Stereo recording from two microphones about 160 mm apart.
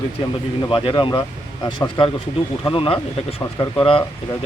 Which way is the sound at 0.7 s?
30° left (ahead or behind).